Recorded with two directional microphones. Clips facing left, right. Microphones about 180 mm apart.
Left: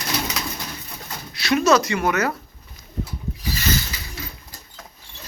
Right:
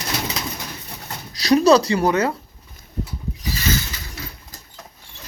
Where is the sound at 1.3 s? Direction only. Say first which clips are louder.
Right 4 dB; 35° right (ahead or behind).